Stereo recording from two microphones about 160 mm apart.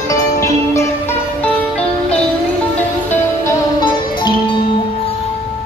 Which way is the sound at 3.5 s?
25° left (ahead or behind).